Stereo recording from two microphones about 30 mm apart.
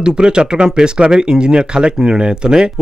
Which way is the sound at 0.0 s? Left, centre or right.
Right.